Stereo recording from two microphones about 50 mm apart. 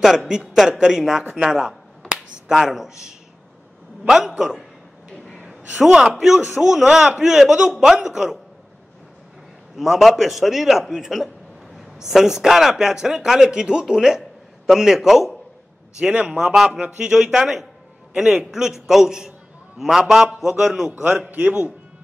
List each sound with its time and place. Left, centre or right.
0.0 s a man's voice: centre
1.3 s finger snapping: centre
4.1 s a man's voice: centre
5.3 s a man's voice: right
9.8 s a man's voice: centre
16.0 s a man's voice: right
16.5 s a man's voice: centre
21.3 s speech: right